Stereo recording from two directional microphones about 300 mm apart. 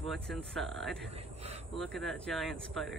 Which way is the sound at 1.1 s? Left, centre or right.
Right.